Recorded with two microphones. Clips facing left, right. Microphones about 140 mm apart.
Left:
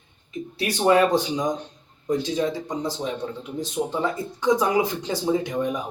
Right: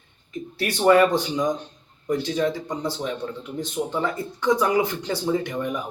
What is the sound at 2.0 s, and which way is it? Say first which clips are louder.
Speech: even; 20° left (ahead or behind).